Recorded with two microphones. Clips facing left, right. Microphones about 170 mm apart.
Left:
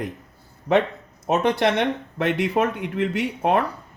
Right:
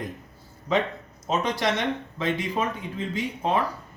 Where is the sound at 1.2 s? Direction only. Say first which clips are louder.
Left 5 dB; 60° left (ahead or behind).